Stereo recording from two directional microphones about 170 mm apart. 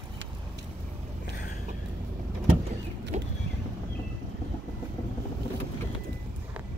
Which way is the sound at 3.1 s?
45° right (ahead or behind).